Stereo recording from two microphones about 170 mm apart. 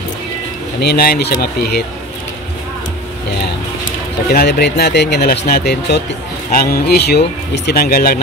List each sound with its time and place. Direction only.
0.7 s speech: 65° left (ahead or behind)
4.3 s speech: 70° left (ahead or behind)
6.5 s speech: 65° left (ahead or behind)